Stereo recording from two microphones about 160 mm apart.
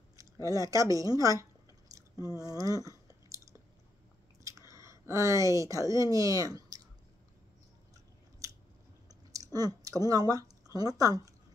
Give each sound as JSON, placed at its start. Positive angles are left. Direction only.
{"t": 0.2, "sound": "speech", "side_deg": -20}
{"t": 4.5, "sound": "speech", "side_deg": -20}
{"t": 9.3, "sound": "speech", "side_deg": -20}